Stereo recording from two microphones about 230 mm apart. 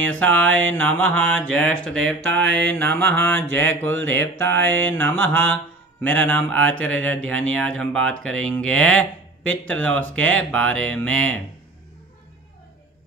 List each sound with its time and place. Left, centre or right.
0.1 s mantra: centre
7.2 s speech: right
7.7 s mantra: centre